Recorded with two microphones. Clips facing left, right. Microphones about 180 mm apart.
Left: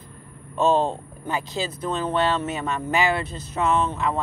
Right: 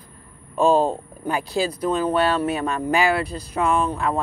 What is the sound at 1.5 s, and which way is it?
Speech, 20° left (ahead or behind).